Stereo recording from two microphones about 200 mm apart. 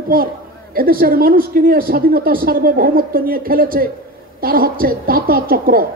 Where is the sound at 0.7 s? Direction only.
45° right (ahead or behind).